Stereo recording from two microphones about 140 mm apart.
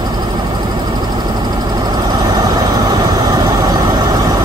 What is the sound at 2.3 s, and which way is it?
Vehicle, 25° right (ahead or behind).